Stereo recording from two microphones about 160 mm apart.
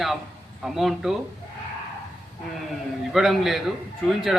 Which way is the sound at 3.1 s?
Centre (ahead or behind).